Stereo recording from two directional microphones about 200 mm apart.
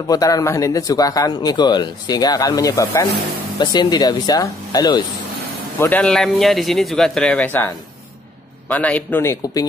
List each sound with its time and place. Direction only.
0.1 s speech: 15° left (ahead or behind)
5.8 s speech: 10° left (ahead or behind)